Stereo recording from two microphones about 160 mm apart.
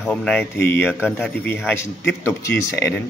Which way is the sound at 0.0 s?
5° left (ahead or behind).